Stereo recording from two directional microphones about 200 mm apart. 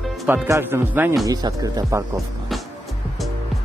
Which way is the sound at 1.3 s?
20° right (ahead or behind).